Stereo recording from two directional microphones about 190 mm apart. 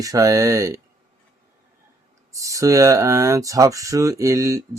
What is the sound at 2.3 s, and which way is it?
Speech, 15° right (ahead or behind).